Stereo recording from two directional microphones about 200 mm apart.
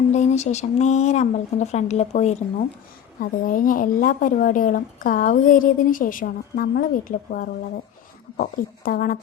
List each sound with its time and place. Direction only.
0.1 s speech: 35° left (ahead or behind)